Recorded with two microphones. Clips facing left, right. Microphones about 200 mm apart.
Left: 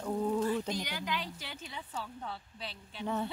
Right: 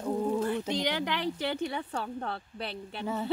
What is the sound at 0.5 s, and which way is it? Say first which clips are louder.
Speech: right 4 dB; 70° right (ahead or behind).